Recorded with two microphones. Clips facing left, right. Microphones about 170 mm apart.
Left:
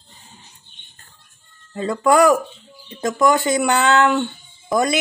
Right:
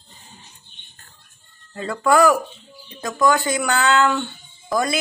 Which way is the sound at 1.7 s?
20° left (ahead or behind).